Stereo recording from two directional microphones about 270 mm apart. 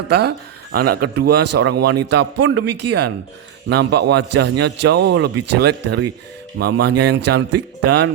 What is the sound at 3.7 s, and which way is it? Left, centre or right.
Speech, right.